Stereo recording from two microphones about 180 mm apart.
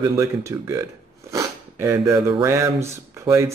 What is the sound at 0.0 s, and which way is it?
Speech, 15° right (ahead or behind).